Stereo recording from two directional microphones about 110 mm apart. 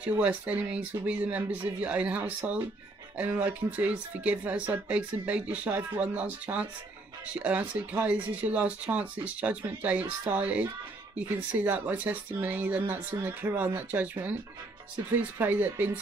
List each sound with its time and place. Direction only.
0.0 s speech: 15° right (ahead or behind)